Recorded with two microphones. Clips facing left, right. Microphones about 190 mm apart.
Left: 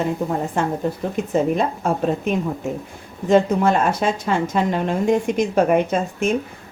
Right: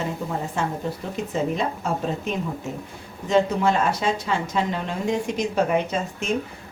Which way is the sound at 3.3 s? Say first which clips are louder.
Left 4 dB; 50° left (ahead or behind).